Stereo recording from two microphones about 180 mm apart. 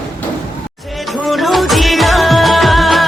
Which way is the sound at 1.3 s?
Centre (ahead or behind).